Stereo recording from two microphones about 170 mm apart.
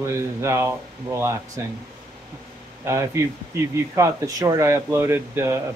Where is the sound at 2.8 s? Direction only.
15° right (ahead or behind).